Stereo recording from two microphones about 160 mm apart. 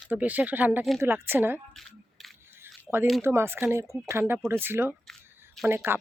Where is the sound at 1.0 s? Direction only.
15° right (ahead or behind).